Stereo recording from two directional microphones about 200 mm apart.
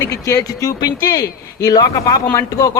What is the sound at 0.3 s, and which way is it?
A man's voice, 15° left (ahead or behind).